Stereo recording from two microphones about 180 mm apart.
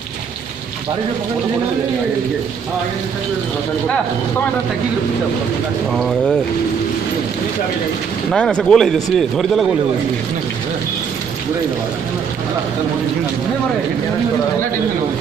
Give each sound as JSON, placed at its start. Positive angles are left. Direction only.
{"t": 5.9, "sound": "speech", "side_deg": 0}
{"t": 8.3, "sound": "speech", "side_deg": 5}